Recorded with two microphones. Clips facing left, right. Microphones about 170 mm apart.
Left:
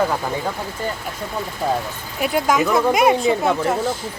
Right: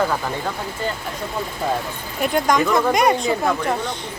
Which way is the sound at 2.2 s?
5° left (ahead or behind).